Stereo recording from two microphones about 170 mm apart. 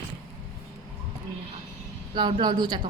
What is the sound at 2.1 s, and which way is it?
Speech, 30° right (ahead or behind).